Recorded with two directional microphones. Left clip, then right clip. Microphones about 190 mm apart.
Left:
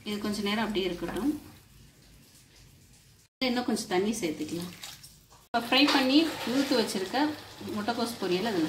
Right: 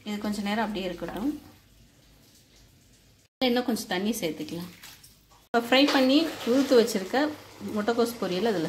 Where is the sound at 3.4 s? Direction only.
45° right (ahead or behind).